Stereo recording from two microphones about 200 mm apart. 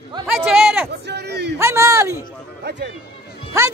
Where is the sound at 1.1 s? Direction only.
55° right (ahead or behind).